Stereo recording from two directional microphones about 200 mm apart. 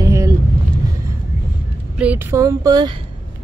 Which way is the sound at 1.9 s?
5° right (ahead or behind).